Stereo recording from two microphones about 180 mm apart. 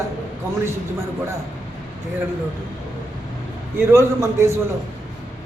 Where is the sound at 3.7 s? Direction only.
15° right (ahead or behind).